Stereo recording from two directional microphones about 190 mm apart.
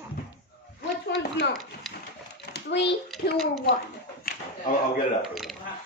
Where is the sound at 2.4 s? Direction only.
60° left (ahead or behind).